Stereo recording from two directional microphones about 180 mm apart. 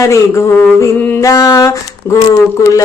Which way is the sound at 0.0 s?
15° left (ahead or behind).